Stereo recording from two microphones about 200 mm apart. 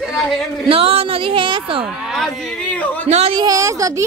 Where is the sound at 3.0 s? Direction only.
30° right (ahead or behind).